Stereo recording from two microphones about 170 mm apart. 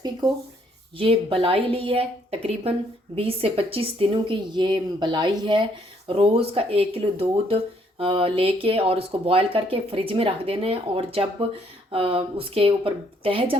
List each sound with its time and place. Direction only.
0.9 s speech: 30° right (ahead or behind)
3.2 s speech: 35° right (ahead or behind)